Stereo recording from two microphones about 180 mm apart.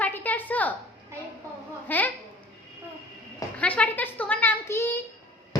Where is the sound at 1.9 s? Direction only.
10° left (ahead or behind).